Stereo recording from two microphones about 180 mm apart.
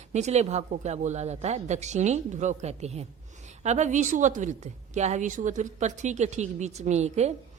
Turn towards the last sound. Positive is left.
turn(degrees=-40)  # may be behind; listen again after turning